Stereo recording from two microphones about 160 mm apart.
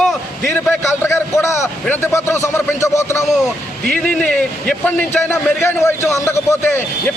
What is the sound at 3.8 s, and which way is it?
A man's voice, 5° left (ahead or behind).